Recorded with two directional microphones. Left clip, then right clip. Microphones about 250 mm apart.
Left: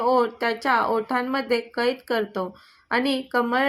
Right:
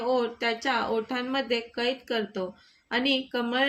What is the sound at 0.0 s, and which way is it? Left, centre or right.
A woman's voice, centre.